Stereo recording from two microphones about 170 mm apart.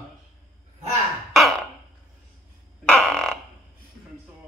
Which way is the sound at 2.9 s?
5° left (ahead or behind).